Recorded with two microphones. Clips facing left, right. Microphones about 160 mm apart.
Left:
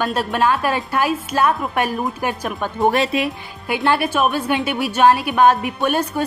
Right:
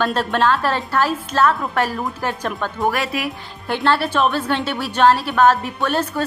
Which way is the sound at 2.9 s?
25° left (ahead or behind).